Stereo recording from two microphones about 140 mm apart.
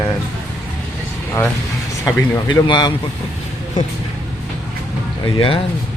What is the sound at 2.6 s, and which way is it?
Speech, 30° left (ahead or behind).